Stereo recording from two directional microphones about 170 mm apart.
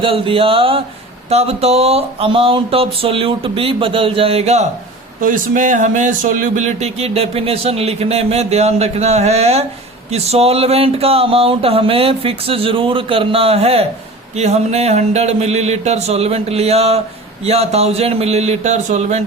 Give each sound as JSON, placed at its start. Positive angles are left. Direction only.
{"t": 0.0, "sound": "speech", "side_deg": -30}
{"t": 5.2, "sound": "speech", "side_deg": -50}